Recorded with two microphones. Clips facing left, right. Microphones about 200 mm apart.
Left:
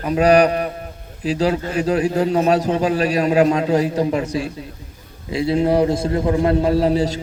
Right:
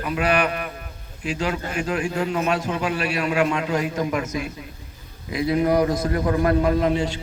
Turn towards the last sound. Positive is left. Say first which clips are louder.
# left 4 dB
turn(degrees=35)  # may be behind; listen again after turning